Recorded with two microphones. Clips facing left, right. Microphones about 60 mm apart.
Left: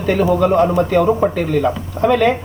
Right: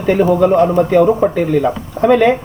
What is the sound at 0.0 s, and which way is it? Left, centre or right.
A man's voice, centre.